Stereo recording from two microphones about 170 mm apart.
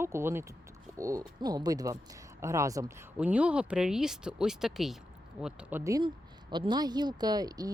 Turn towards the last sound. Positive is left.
turn(degrees=-20)  # may be behind; listen again after turning